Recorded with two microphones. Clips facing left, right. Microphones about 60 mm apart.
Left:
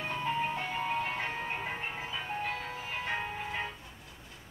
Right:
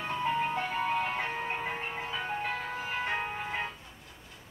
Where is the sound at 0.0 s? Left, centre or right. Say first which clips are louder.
Right 3 dB; centre.